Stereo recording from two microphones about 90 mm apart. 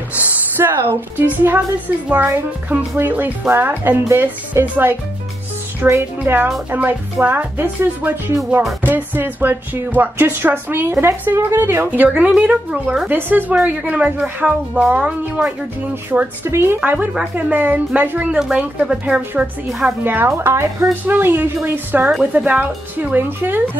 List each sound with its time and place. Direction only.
0.2 s a child's voice: 15° right (ahead or behind)